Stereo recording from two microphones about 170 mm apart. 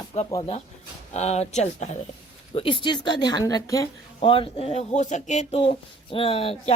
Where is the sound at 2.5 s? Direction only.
30° left (ahead or behind).